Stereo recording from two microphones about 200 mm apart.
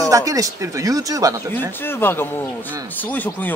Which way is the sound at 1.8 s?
10° left (ahead or behind).